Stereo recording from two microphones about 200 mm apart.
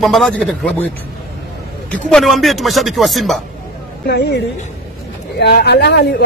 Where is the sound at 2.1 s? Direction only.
Centre (ahead or behind).